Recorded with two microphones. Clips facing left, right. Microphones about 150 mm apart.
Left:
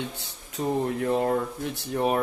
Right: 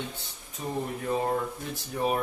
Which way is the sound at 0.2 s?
70° left (ahead or behind).